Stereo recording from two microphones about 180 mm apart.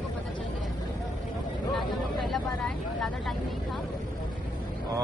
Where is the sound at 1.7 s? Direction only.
Centre (ahead or behind).